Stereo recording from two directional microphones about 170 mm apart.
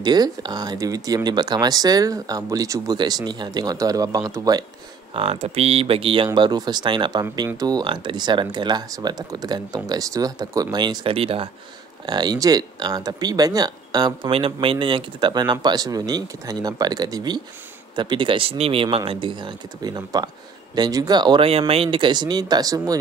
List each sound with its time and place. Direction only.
0.0 s speech: 25° right (ahead or behind)
5.1 s speech: 35° right (ahead or behind)